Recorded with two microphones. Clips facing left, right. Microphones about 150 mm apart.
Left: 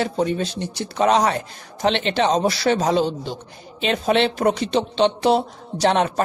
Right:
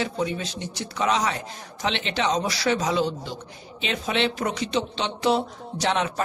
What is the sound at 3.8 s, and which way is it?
Speech, 45° left (ahead or behind).